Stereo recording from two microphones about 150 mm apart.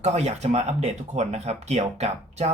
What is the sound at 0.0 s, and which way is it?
Speech, 45° right (ahead or behind).